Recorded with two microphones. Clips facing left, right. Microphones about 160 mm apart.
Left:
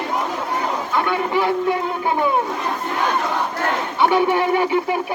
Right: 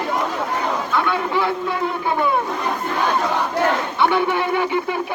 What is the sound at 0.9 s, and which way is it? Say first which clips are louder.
Speech: left 2 dB; 15° left (ahead or behind).